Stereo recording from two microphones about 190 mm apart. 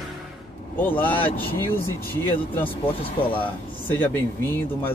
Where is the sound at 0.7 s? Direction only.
10° left (ahead or behind).